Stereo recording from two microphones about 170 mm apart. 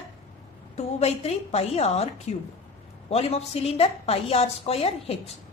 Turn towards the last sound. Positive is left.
turn(degrees=35)  # may be behind; listen again after turning